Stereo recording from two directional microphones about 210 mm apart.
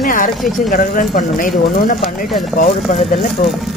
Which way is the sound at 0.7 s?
40° left (ahead or behind).